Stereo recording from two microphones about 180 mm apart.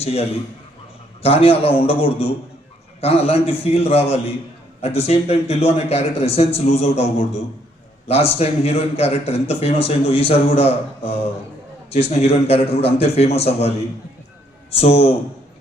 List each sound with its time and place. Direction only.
0.0 s a man's voice: 35° left (ahead or behind)
14.8 s a man's voice: 35° left (ahead or behind)